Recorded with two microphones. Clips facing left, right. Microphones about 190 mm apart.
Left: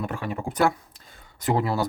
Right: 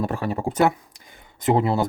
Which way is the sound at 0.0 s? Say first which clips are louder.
Right 5 dB; 35° right (ahead or behind).